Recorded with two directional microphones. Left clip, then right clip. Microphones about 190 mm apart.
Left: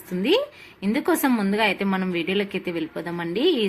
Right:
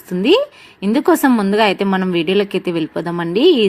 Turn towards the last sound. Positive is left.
turn(degrees=-35)  # may be behind; listen again after turning